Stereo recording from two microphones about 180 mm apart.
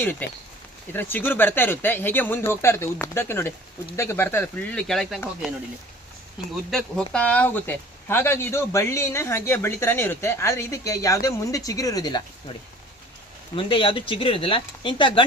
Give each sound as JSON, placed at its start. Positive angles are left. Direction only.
{"t": 0.2, "sound": "speech", "side_deg": 10}
{"t": 6.7, "sound": "speech", "side_deg": 0}
{"t": 13.6, "sound": "speech", "side_deg": 30}